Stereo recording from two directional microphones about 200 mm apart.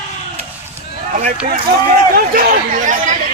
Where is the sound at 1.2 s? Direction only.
40° right (ahead or behind).